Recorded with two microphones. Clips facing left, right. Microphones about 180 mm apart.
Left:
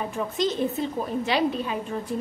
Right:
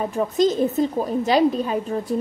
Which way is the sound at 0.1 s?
40° right (ahead or behind).